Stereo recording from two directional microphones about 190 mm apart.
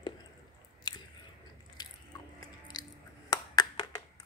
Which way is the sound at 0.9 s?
20° left (ahead or behind).